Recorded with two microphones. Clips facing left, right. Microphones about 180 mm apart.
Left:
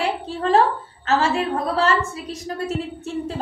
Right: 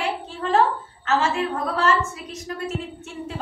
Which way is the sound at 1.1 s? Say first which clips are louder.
Left 2 dB; 30° left (ahead or behind).